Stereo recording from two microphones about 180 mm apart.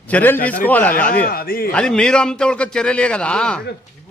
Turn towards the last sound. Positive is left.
turn(degrees=5)  # may be behind; listen again after turning